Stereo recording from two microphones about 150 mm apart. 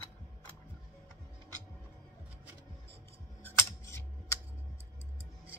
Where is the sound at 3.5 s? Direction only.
15° left (ahead or behind).